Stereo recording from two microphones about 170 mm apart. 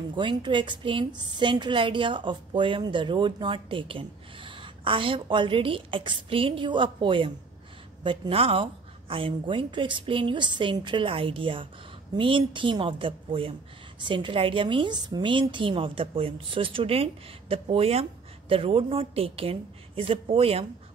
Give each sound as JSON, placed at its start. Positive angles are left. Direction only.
{"t": 0.1, "sound": "a woman's voice", "side_deg": -30}